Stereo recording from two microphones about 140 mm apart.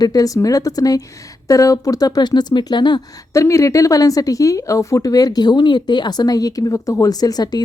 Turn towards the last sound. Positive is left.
turn(degrees=30)  # may be behind; listen again after turning